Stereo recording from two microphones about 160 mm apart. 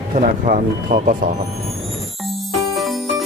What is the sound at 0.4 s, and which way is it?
Speech, 60° right (ahead or behind).